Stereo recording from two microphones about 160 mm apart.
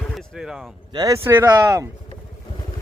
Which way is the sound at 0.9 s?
20° right (ahead or behind).